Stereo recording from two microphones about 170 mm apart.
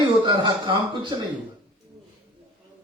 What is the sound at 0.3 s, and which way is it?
Mantra, 25° right (ahead or behind).